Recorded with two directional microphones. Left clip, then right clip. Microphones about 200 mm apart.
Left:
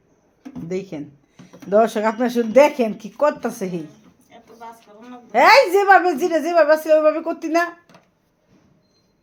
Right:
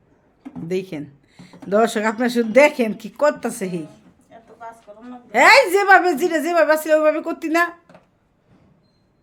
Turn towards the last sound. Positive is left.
turn(degrees=-15)  # may be behind; listen again after turning